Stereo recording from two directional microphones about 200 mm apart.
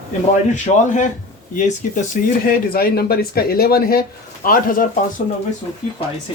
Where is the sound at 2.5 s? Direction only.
50° left (ahead or behind).